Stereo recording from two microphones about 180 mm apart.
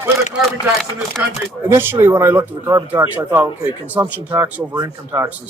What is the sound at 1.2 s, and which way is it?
Speech, 10° right (ahead or behind).